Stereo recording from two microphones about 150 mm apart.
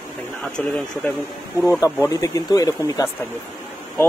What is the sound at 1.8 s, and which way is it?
Speech, 20° left (ahead or behind).